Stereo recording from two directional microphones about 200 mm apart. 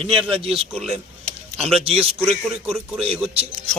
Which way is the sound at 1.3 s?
30° right (ahead or behind).